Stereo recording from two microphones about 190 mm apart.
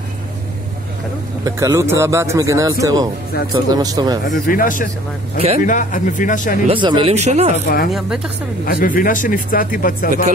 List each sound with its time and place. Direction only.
1.4 s a man's voice: 15° right (ahead or behind)
4.3 s speech: 45° left (ahead or behind)
6.7 s speech: 25° right (ahead or behind)
7.5 s speech: 50° left (ahead or behind)